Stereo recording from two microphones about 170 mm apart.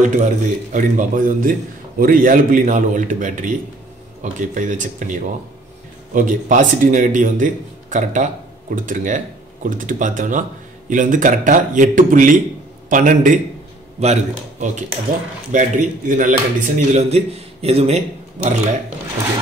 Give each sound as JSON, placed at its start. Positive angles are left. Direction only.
{"t": 0.0, "sound": "a man's voice", "side_deg": -45}